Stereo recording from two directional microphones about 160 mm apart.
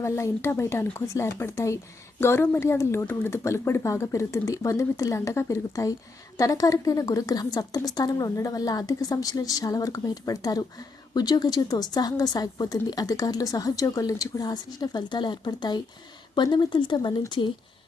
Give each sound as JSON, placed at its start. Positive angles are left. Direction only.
{"t": 0.0, "sound": "speech", "side_deg": 15}